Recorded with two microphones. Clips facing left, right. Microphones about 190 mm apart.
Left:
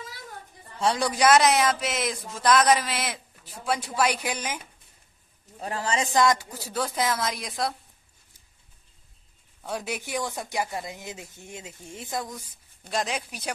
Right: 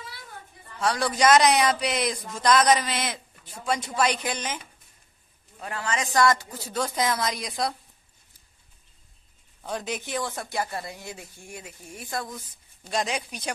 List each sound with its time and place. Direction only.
0.7 s a man's voice: 20° left (ahead or behind)
5.6 s a man's voice: 35° left (ahead or behind)
6.1 s a man's voice: 15° left (ahead or behind); by 7.7 s centre (ahead or behind)
9.6 s speech: 5° left (ahead or behind)
12.9 s a man's voice: centre (ahead or behind)